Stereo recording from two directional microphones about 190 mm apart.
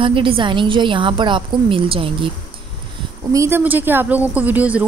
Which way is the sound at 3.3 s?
15° right (ahead or behind).